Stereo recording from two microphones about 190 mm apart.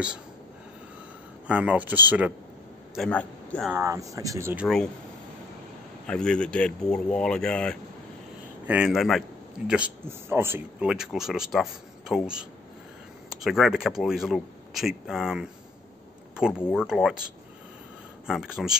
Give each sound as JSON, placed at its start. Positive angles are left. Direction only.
{"t": 1.5, "sound": "speech", "side_deg": -5}
{"t": 2.9, "sound": "a man's voice", "side_deg": 5}
{"t": 3.7, "sound": "speech", "side_deg": -15}
{"t": 6.0, "sound": "speech", "side_deg": 5}
{"t": 18.2, "sound": "speech", "side_deg": -5}